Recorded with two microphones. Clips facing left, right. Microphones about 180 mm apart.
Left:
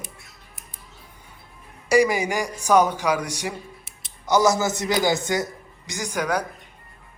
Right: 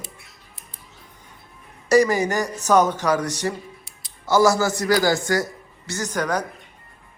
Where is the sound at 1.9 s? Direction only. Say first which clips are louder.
Right 2 dB; 10° left (ahead or behind).